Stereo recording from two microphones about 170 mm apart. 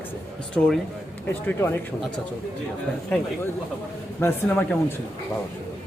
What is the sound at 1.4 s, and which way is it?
Speech, 15° left (ahead or behind).